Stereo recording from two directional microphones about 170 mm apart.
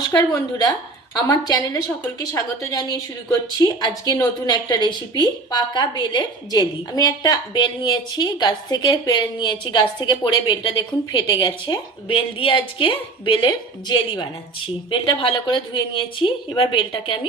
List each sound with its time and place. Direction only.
0.1 s a woman's voice: 15° left (ahead or behind)